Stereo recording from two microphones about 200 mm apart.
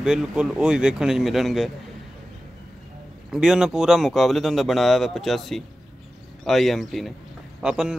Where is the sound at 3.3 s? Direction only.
5° right (ahead or behind).